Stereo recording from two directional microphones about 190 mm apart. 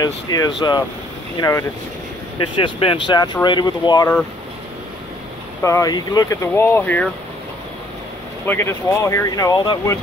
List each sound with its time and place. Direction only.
0.0 s speech: 20° left (ahead or behind)
2.3 s speech: 25° left (ahead or behind)
5.6 s speech: 15° left (ahead or behind)
8.5 s speech: 15° left (ahead or behind)